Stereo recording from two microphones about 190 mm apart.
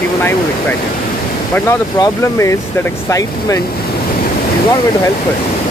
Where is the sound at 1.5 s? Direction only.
15° left (ahead or behind).